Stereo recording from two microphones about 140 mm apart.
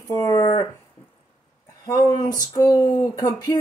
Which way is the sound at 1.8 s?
20° left (ahead or behind).